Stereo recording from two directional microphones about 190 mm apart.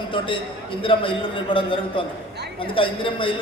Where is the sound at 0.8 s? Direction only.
25° left (ahead or behind).